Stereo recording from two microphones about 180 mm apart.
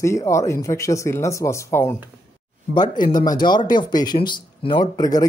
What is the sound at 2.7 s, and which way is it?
Speech, 25° left (ahead or behind).